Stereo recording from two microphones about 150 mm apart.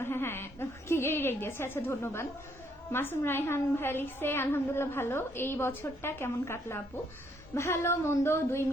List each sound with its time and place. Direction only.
0.0 s a woman's voice: 15° left (ahead or behind)